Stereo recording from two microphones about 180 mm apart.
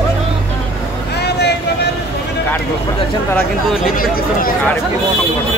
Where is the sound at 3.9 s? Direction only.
50° left (ahead or behind).